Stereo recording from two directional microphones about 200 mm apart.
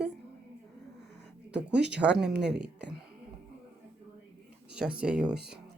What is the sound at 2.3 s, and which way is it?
Speech, 55° right (ahead or behind).